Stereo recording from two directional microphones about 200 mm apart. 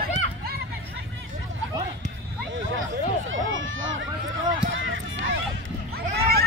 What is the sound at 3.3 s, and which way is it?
Run, 75° right (ahead or behind).